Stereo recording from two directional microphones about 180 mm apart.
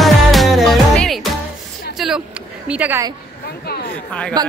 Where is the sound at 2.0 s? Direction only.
Centre (ahead or behind).